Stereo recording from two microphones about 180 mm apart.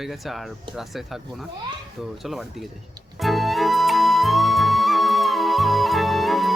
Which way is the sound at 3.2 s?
Centre (ahead or behind).